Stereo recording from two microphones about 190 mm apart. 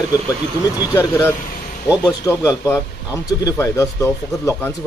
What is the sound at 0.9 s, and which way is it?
Speech, 15° left (ahead or behind).